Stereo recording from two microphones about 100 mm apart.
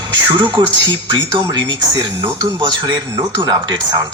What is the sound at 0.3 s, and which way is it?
Speech, 50° right (ahead or behind).